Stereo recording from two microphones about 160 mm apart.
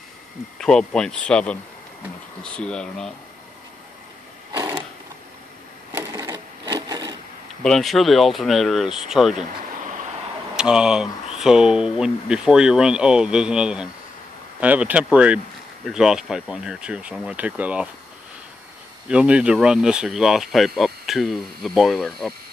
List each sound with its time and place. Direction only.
0.6 s speech: 5° left (ahead or behind)
4.5 s a sound: 20° right (ahead or behind)
5.9 s wood: 20° right (ahead or behind)
7.6 s speech: centre (ahead or behind)
10.5 s speech: 5° right (ahead or behind)
19.0 s speech: 5° right (ahead or behind)